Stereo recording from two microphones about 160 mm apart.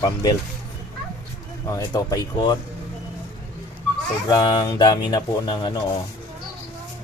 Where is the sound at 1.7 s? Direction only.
20° left (ahead or behind).